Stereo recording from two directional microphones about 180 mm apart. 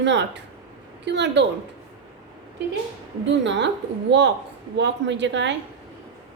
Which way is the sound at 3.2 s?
80° right.